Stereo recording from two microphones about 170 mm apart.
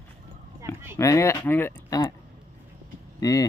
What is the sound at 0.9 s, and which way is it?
Speech, 20° left (ahead or behind).